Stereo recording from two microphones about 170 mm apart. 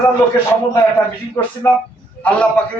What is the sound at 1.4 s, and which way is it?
Speech, 15° left (ahead or behind).